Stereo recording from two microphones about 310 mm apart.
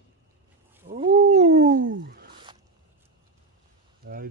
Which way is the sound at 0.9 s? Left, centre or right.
Centre.